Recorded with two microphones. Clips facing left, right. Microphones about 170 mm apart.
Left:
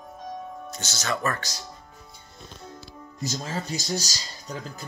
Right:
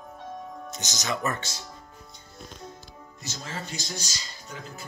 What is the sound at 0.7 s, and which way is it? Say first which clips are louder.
Speech: left 1 dB; 15° right (ahead or behind).